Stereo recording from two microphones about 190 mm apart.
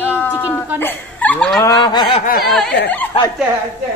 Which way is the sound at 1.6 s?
20° left (ahead or behind).